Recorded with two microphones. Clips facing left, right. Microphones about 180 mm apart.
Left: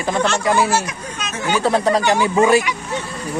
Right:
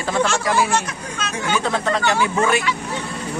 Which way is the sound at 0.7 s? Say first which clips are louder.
Left 2 dB; 10° left (ahead or behind).